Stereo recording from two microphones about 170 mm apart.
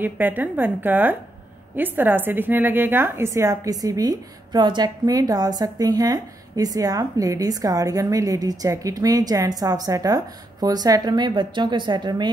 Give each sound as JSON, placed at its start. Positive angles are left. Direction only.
{"t": 0.0, "sound": "a woman's voice", "side_deg": -10}